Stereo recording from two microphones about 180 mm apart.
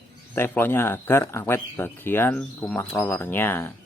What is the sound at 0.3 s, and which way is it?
Speech, 10° left (ahead or behind).